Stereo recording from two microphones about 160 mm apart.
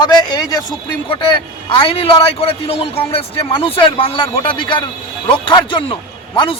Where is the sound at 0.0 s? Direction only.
25° left (ahead or behind).